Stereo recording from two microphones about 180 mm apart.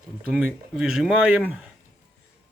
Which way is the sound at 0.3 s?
5° right (ahead or behind).